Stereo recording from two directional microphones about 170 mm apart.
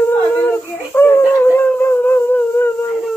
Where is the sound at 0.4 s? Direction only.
15° left (ahead or behind).